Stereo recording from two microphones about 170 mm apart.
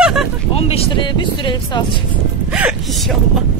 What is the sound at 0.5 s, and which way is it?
Speech, 35° left (ahead or behind).